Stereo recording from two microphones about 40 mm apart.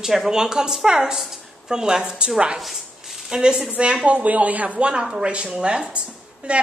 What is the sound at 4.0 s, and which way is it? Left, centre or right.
A woman's voice, right.